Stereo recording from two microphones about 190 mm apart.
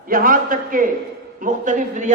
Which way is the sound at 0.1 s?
50° right (ahead or behind).